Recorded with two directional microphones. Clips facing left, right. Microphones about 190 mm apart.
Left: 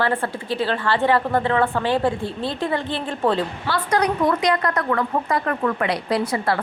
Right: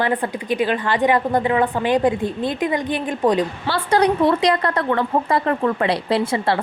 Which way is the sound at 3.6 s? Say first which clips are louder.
Right 3 dB; 30° right (ahead or behind).